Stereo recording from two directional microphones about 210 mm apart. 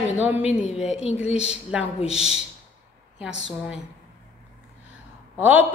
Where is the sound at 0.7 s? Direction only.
30° left (ahead or behind).